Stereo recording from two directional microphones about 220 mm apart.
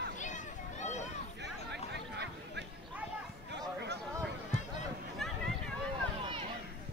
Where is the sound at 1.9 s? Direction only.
50° right (ahead or behind).